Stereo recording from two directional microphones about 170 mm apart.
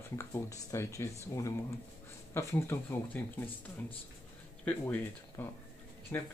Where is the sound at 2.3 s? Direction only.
15° left (ahead or behind).